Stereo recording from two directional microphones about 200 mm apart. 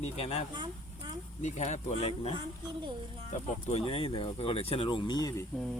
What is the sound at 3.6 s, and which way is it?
Speech, 30° left (ahead or behind).